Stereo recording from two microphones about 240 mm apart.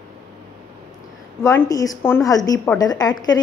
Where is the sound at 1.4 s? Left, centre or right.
Centre.